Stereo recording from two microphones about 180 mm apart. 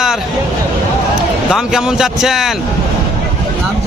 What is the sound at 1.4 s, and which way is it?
Speech, 5° right (ahead or behind).